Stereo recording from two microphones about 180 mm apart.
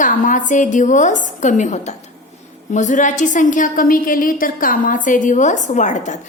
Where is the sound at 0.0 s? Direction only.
45° left (ahead or behind).